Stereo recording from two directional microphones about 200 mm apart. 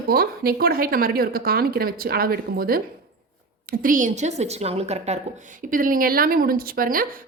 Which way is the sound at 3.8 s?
40° right (ahead or behind).